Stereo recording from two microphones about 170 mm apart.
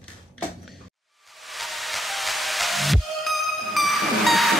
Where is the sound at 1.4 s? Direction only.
Centre (ahead or behind).